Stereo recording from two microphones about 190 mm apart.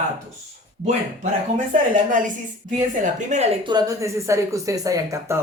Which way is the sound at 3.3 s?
40° right (ahead or behind).